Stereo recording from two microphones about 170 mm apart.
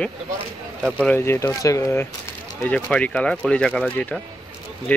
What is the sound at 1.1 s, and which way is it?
Speech, 15° left (ahead or behind).